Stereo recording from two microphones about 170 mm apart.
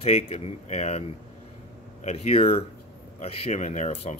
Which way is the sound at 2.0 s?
35° left (ahead or behind).